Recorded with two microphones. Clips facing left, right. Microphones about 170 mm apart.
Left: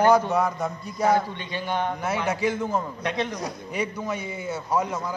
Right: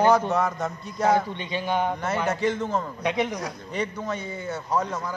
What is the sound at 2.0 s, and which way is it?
Speech, centre (ahead or behind).